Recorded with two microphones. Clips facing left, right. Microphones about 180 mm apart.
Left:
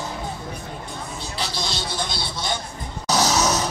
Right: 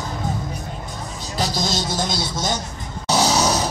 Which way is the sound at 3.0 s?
30° right (ahead or behind).